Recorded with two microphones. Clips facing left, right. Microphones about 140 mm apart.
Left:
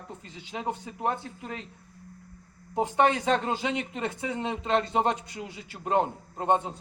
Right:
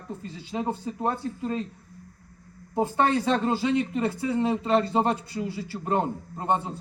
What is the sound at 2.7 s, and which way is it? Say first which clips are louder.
Speech: right 1 dB; 20° left (ahead or behind).